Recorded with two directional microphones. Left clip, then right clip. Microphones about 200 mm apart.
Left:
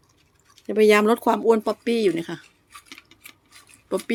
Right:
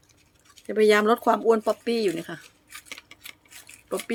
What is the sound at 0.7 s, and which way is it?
Speech, 20° left (ahead or behind).